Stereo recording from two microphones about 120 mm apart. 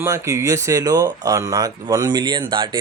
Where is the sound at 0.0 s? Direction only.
20° right (ahead or behind).